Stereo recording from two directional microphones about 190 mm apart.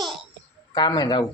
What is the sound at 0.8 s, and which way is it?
Speech, 20° left (ahead or behind).